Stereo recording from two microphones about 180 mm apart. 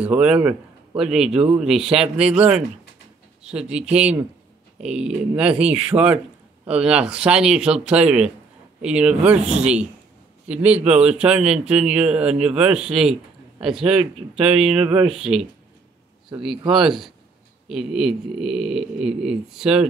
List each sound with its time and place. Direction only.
0.0 s speech: 5° right (ahead or behind)
3.4 s speech: 5° right (ahead or behind)
14.4 s speech: 30° right (ahead or behind)
15.0 s speech: centre (ahead or behind)
16.7 s speech: centre (ahead or behind)